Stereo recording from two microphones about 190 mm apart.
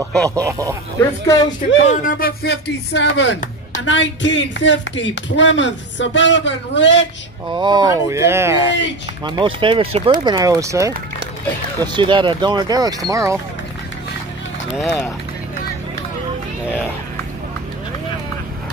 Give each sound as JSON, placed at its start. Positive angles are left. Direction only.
{"t": 0.3, "sound": "speech", "side_deg": -15}
{"t": 0.9, "sound": "speech", "side_deg": 15}
{"t": 1.9, "sound": "speech", "side_deg": 50}
{"t": 7.5, "sound": "speech", "side_deg": -25}
{"t": 9.2, "sound": "speech", "side_deg": -25}